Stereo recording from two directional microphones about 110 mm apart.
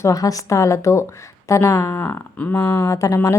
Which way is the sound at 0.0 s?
30° left (ahead or behind).